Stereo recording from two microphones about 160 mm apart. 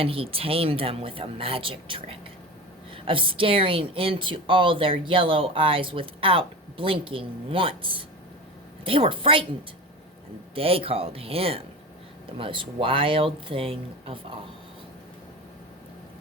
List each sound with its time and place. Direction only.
0.0 s a woman's voice: 35° right (ahead or behind)